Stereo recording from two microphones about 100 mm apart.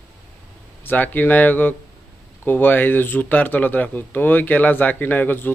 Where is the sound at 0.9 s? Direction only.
20° left (ahead or behind).